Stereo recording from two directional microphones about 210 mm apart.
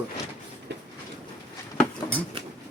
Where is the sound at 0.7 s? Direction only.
55° right (ahead or behind).